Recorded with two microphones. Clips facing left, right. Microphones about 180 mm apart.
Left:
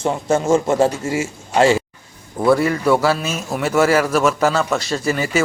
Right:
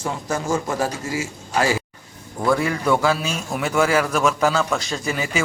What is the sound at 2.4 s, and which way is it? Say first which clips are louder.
A man's voice: left 5 dB; centre (ahead or behind).